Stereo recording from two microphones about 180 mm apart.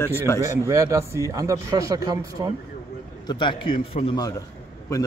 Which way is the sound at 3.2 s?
25° left (ahead or behind).